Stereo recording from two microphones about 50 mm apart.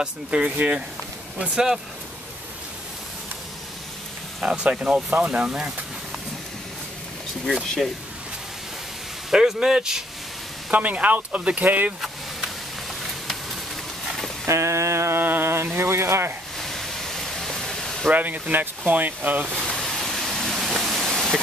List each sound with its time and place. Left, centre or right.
0.0 s speech: right
1.5 s speech: centre
4.4 s speech: right
9.3 s speech: centre
10.7 s speech: right
14.4 s a sound: right
15.1 s a sound: right
15.5 s speech: right
16.5 s pink noise: centre
18.1 s speech: right
19.5 s a sound: centre